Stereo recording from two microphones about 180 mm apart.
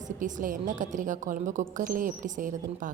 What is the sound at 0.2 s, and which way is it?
A woman's voice, 45° right (ahead or behind).